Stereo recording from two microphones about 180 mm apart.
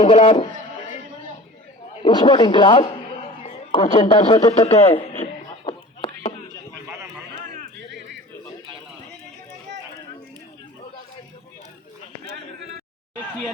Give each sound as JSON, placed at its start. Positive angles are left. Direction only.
{"t": 0.0, "sound": "speech", "side_deg": 35}
{"t": 2.0, "sound": "a man's voice", "side_deg": 25}
{"t": 3.4, "sound": "a sound", "side_deg": 30}